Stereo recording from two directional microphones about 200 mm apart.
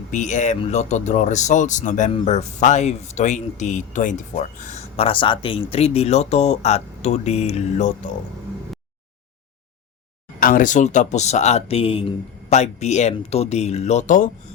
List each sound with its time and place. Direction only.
0.1 s speech: 35° left (ahead or behind)
10.4 s speech: 40° left (ahead or behind)